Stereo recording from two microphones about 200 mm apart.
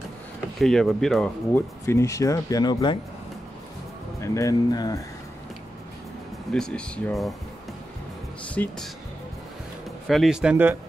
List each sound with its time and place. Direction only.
0.6 s speech: centre (ahead or behind); by 3.0 s 20° left (ahead or behind)
4.2 s speech: 15° left (ahead or behind)
6.5 s speech: 5° left (ahead or behind)
8.6 s speech: 10° left (ahead or behind)
10.0 s speech: centre (ahead or behind)